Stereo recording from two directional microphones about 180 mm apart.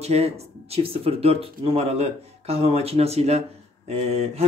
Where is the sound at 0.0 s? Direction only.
35° right (ahead or behind).